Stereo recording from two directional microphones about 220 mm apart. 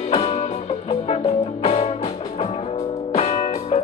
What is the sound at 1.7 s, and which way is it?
Music, 25° left (ahead or behind).